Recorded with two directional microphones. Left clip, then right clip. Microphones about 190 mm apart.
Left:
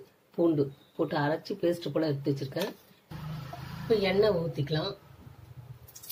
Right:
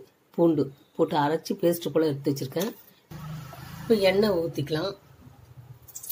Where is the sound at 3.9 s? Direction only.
60° right (ahead or behind).